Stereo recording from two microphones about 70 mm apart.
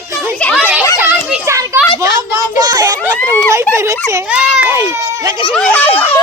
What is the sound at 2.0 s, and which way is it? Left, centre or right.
A child's voice, right.